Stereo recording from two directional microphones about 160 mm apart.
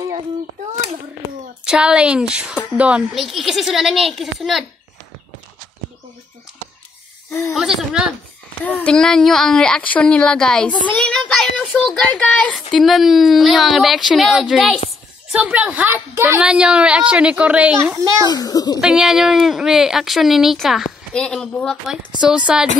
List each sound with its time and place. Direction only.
1.6 s speech: 5° right (ahead or behind)
7.5 s speech: centre (ahead or behind)
8.6 s a woman's voice: 10° left (ahead or behind); by 17.7 s 10° right (ahead or behind)
17.9 s a child's voice: 20° right (ahead or behind)
18.2 s a child's voice: 25° left (ahead or behind)
18.8 s speech: 5° right (ahead or behind)